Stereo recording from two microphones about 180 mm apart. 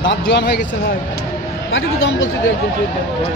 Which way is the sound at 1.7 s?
90° left.